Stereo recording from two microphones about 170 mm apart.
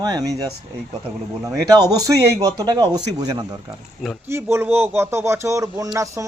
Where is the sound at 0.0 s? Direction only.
20° right (ahead or behind).